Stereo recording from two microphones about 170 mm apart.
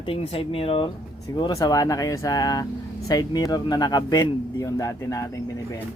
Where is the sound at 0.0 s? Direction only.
35° left (ahead or behind).